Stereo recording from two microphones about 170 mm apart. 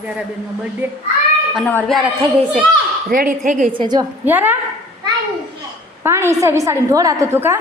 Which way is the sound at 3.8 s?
25° right (ahead or behind).